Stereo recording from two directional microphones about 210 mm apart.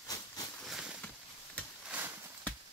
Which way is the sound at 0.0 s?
20° left (ahead or behind).